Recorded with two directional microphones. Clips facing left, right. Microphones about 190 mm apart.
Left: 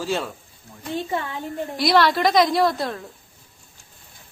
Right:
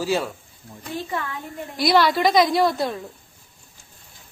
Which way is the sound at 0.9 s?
25° left (ahead or behind).